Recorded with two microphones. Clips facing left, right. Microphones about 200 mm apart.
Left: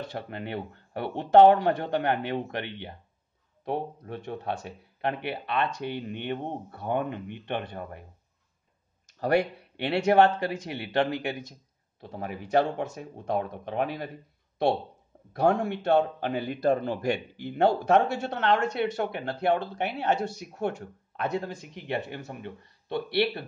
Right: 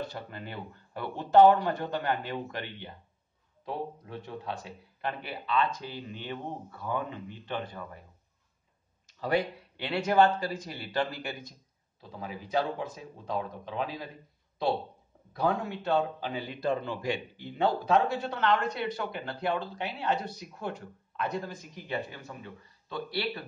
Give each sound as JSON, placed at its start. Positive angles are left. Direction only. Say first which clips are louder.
{"t": 0.3, "sound": "speech", "louder": "left 6 dB", "side_deg": 65}
{"t": 9.2, "sound": "speech", "louder": "left 4 dB", "side_deg": 65}
{"t": 15.3, "sound": "speech", "louder": "left 5 dB", "side_deg": 75}
{"t": 17.4, "sound": "speech", "louder": "left 5 dB", "side_deg": 70}